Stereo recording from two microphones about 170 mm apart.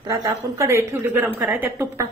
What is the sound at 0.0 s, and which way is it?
A woman's voice, 20° right (ahead or behind).